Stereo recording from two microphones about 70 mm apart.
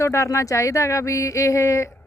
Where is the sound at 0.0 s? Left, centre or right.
Left.